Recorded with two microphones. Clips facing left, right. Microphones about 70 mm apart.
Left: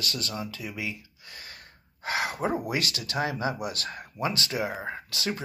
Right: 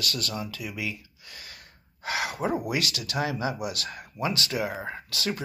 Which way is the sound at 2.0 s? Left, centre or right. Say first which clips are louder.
Even; left.